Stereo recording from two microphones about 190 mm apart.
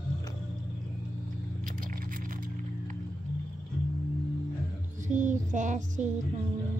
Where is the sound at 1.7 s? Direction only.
45° right (ahead or behind).